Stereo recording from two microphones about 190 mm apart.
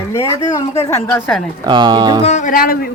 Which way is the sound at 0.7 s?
35° left (ahead or behind).